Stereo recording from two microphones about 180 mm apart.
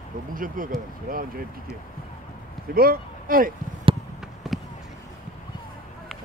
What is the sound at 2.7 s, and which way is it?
Speech, 55° right (ahead or behind).